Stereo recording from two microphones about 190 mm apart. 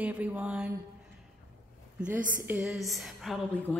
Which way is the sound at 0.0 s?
10° right (ahead or behind).